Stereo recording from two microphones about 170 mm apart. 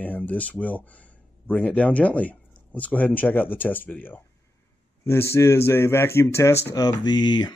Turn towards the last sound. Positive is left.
turn(degrees=25)  # may be behind; listen again after turning